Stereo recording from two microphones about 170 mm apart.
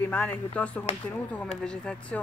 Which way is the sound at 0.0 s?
10° left (ahead or behind).